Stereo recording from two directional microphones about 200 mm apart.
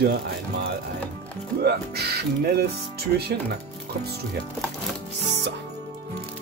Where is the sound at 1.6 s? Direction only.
55° right (ahead or behind).